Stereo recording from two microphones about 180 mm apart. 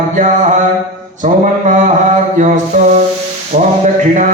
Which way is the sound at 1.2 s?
45° right (ahead or behind).